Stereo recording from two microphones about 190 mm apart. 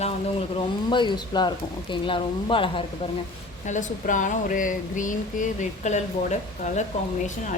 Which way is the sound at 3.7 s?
40° left (ahead or behind).